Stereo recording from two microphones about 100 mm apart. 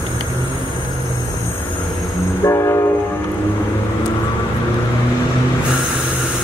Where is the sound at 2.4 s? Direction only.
30° left (ahead or behind).